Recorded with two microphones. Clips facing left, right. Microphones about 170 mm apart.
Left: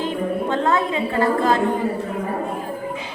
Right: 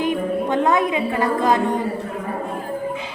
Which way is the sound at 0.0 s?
15° right (ahead or behind).